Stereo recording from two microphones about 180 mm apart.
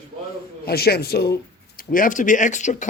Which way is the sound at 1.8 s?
50° left (ahead or behind).